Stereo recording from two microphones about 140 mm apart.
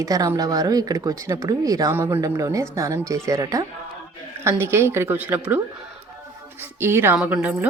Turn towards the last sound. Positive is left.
turn(degrees=-10)  # may be behind; listen again after turning